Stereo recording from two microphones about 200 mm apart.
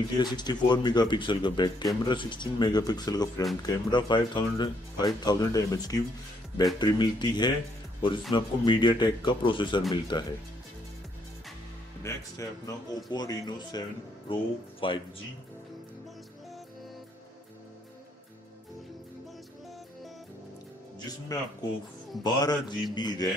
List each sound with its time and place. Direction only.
0.2 s speech: 20° left (ahead or behind)
12.0 s speech: 15° left (ahead or behind)
21.3 s speech: 15° left (ahead or behind)